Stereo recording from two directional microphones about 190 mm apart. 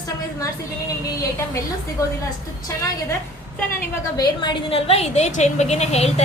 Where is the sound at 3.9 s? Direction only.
20° left (ahead or behind).